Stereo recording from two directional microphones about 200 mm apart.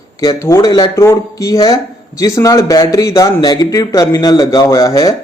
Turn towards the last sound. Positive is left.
turn(degrees=15)  # may be behind; listen again after turning